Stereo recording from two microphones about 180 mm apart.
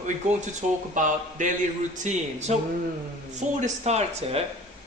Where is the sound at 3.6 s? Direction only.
40° right (ahead or behind).